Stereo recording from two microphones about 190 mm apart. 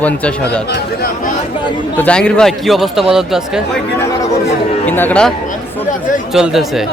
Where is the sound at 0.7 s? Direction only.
55° left (ahead or behind).